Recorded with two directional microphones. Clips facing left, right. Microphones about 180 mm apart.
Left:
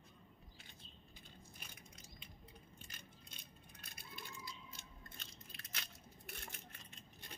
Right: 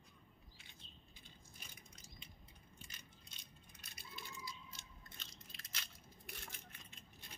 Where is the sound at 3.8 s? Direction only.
55° left (ahead or behind).